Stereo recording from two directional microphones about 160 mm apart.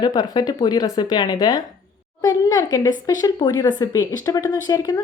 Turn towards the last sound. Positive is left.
turn(degrees=25)  # may be behind; listen again after turning